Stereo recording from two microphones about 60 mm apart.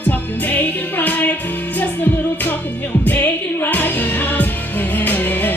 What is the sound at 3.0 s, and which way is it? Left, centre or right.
Music, left.